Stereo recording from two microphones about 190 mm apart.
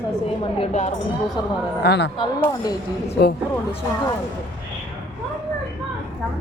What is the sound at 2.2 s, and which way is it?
Speech, 20° left (ahead or behind).